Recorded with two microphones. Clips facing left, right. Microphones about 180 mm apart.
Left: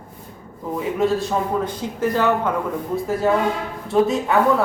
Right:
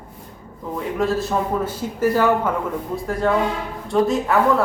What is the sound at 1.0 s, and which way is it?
A man's voice, centre (ahead or behind).